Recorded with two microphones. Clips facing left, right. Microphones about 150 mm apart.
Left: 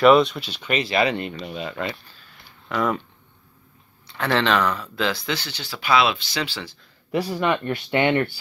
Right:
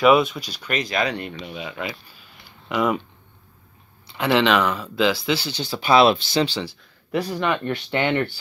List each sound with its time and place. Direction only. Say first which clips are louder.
0.0 s speech: left 1 dB; centre (ahead or behind)
4.2 s speech: right 2 dB; 5° right (ahead or behind)
5.6 s speech: right 4 dB; 25° right (ahead or behind)
7.1 s speech: left 1 dB; 5° left (ahead or behind)